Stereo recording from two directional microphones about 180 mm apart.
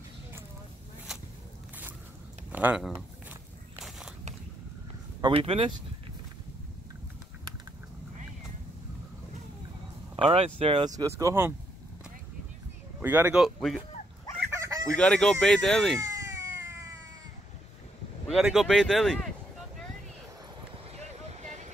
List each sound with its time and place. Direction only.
2.5 s speech: 5° right (ahead or behind)
5.2 s speech: 30° right (ahead or behind)
10.1 s speech: 30° right (ahead or behind); by 11.5 s 15° right (ahead or behind)
13.0 s speech: 10° right (ahead or behind)
14.5 s chicken: 20° right (ahead or behind)
15.0 s speech: 5° left (ahead or behind)
16.0 s cat: 15° right (ahead or behind)
18.3 s speech: centre (ahead or behind)
20.7 s a sound: 35° right (ahead or behind)